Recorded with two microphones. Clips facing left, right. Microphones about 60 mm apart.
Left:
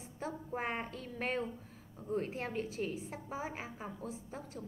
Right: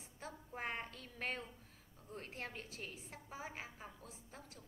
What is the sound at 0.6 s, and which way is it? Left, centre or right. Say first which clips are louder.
A woman's voice: left 5 dB; centre.